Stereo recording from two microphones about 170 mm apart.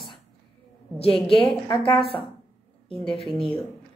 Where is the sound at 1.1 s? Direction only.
Centre (ahead or behind).